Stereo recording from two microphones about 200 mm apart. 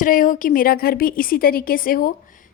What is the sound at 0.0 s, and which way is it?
A woman's voice, 40° left (ahead or behind).